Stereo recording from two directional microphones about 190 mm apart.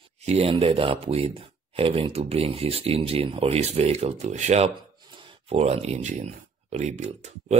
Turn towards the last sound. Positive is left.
turn(degrees=-35)  # may be behind; listen again after turning